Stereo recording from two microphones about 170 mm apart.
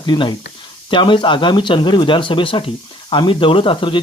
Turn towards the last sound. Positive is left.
turn(degrees=30)  # may be behind; listen again after turning